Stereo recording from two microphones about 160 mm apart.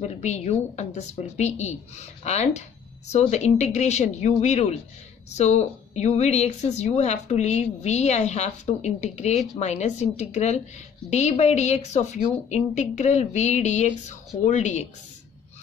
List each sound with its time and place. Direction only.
0.0 s a woman's voice: 45° left (ahead or behind)